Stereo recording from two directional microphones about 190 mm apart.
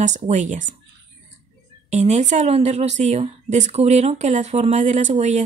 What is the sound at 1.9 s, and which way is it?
Speech, 40° right (ahead or behind).